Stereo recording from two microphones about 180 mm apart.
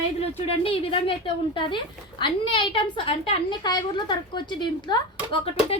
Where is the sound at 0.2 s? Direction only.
35° left (ahead or behind).